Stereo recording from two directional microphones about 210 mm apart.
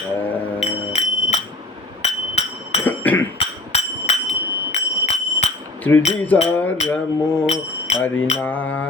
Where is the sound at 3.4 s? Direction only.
30° left (ahead or behind).